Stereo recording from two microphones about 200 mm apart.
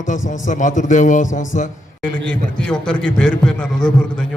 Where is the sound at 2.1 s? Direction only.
5° left (ahead or behind).